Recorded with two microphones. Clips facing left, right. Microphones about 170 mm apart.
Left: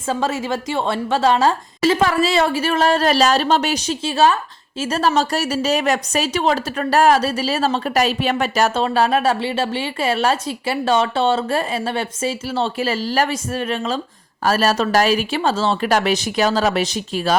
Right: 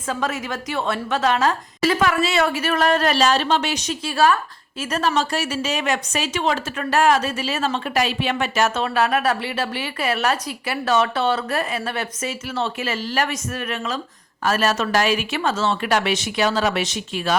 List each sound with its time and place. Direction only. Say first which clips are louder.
0.1 s a woman's voice: left 4 dB; 30° left (ahead or behind)